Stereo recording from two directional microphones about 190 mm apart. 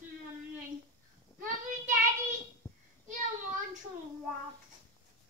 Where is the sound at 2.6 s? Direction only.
20° left (ahead or behind).